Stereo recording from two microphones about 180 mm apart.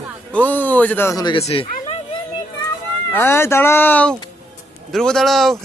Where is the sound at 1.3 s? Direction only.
30° left (ahead or behind).